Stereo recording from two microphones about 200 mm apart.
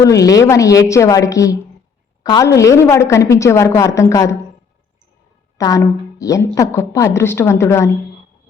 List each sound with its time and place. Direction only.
0.0 s a woman's voice: 15° left (ahead or behind)
5.5 s a woman's voice: 15° left (ahead or behind)